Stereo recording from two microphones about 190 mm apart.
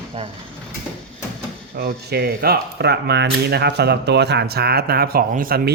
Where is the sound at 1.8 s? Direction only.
55° right (ahead or behind).